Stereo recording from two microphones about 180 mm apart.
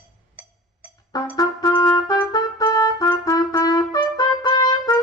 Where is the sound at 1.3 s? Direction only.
20° left (ahead or behind).